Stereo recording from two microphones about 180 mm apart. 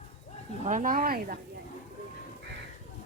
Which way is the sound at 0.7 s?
45° right (ahead or behind).